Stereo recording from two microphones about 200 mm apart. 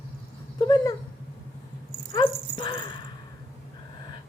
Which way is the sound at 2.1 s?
25° left (ahead or behind).